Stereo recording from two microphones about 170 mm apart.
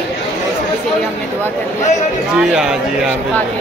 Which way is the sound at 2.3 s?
5° right (ahead or behind).